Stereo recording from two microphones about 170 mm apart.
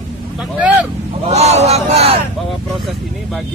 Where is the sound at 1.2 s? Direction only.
40° right (ahead or behind).